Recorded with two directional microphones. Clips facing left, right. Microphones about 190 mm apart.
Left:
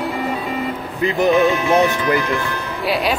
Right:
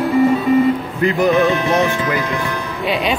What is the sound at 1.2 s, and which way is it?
Speech, centre (ahead or behind).